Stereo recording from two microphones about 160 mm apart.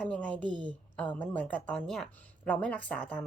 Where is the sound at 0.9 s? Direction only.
10° left (ahead or behind).